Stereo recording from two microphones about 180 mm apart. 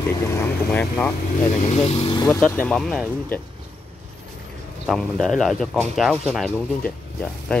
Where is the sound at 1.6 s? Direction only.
35° left (ahead or behind).